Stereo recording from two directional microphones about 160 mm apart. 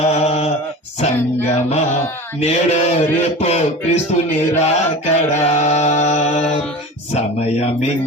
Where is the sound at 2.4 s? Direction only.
45° left (ahead or behind).